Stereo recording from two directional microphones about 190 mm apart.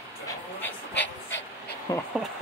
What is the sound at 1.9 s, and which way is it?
Speech, 20° left (ahead or behind).